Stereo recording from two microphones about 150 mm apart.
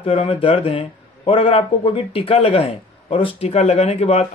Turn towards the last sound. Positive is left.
turn(degrees=45)  # may be behind; listen again after turning